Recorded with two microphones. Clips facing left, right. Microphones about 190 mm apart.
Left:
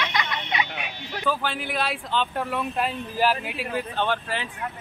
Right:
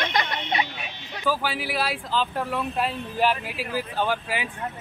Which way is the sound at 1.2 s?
5° right (ahead or behind).